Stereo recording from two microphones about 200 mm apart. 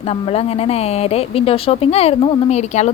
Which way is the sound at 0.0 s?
30° left (ahead or behind).